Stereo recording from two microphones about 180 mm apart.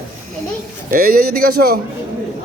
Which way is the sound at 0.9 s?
55° right (ahead or behind).